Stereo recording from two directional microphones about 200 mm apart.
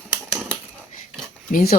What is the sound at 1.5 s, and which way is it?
Speech, 50° left (ahead or behind).